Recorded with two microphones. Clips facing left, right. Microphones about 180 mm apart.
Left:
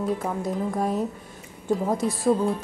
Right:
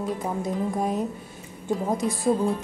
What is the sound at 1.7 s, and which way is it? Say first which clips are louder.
Speech: left 1 dB; centre (ahead or behind).